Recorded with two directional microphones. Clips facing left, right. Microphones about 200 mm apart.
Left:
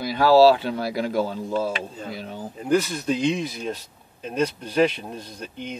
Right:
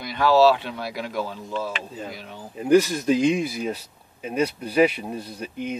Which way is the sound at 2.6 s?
10° right (ahead or behind).